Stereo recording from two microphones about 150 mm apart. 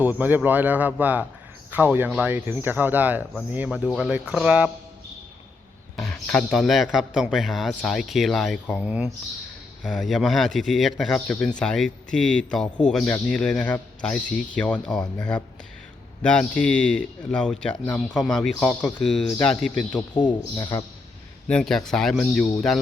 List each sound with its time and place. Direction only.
0.0 s speech: 10° right (ahead or behind)
6.0 s speech: 5° left (ahead or behind)
20.2 s a man's voice: 25° left (ahead or behind)
21.4 s speech: 5° left (ahead or behind)